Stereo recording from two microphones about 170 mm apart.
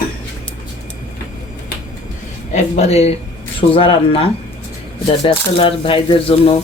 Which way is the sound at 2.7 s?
40° left (ahead or behind).